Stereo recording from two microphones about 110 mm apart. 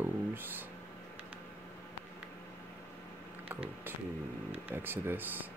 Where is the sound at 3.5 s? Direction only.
20° right (ahead or behind).